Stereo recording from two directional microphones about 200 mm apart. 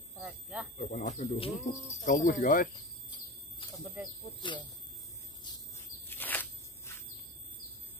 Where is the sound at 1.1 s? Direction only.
35° left (ahead or behind).